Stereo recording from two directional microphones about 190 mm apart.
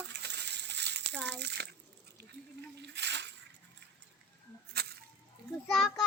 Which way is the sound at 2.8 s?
65° right (ahead or behind).